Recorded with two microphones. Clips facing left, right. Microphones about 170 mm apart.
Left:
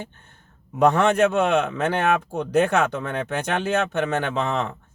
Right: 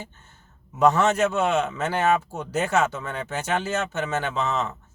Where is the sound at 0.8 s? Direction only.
55° left (ahead or behind).